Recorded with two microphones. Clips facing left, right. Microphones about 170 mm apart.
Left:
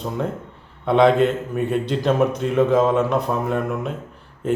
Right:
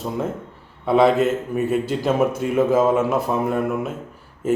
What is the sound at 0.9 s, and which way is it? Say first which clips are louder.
A man's voice: left 1 dB; 5° right (ahead or behind).